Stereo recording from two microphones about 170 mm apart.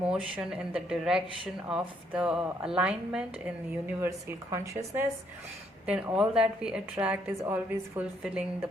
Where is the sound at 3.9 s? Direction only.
15° right (ahead or behind).